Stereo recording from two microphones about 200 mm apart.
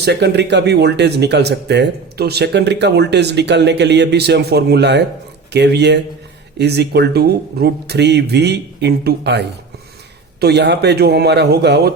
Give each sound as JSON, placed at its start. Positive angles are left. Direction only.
{"t": 0.0, "sound": "speech", "side_deg": -55}
{"t": 10.4, "sound": "speech", "side_deg": -55}